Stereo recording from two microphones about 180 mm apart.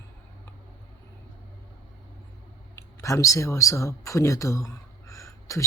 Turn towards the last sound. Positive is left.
turn(degrees=15)  # may be behind; listen again after turning